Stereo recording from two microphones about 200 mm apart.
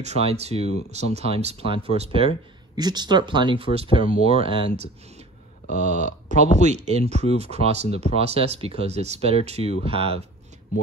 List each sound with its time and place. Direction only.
0.0 s speech: 30° right (ahead or behind)
5.7 s a sound: 45° left (ahead or behind)
6.3 s speech: 35° right (ahead or behind)